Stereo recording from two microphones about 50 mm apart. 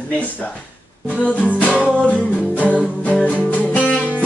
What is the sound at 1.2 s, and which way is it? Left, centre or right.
Music, left.